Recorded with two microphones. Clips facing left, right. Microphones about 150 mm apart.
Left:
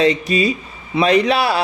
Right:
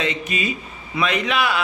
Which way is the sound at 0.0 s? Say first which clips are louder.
Left 9 dB; 35° left (ahead or behind).